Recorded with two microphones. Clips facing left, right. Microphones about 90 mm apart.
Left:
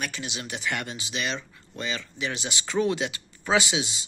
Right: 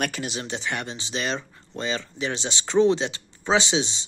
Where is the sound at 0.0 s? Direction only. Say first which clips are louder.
Right 5 dB; 45° right (ahead or behind).